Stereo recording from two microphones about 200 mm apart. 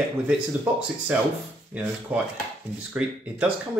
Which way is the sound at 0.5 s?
5° right (ahead or behind).